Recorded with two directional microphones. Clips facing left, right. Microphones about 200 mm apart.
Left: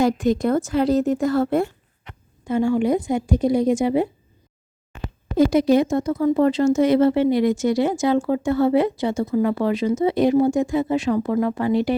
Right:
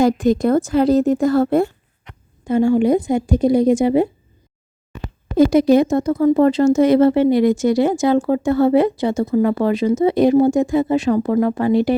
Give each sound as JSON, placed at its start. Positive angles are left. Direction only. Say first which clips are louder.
{"t": 0.0, "sound": "speech", "louder": "right 4 dB", "side_deg": -40}
{"t": 5.4, "sound": "speech", "louder": "right 4 dB", "side_deg": -45}